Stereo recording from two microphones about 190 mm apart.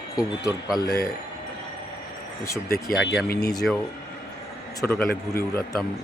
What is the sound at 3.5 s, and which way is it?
Speech, centre (ahead or behind).